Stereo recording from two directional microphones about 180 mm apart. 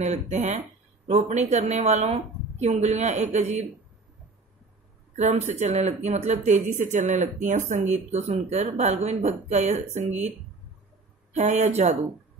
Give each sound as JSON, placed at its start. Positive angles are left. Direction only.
{"t": 0.0, "sound": "speech", "side_deg": -40}
{"t": 5.1, "sound": "speech", "side_deg": -40}
{"t": 11.3, "sound": "speech", "side_deg": -40}